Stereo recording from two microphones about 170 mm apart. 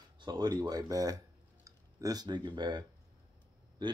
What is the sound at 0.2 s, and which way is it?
Speech, 25° right (ahead or behind).